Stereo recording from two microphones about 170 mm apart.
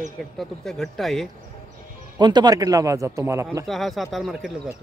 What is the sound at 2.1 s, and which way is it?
Speech, 25° right (ahead or behind).